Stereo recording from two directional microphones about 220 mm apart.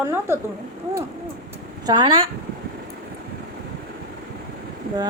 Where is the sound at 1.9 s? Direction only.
20° right (ahead or behind).